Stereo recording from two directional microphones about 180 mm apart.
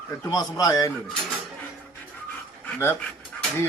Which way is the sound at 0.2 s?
20° left (ahead or behind).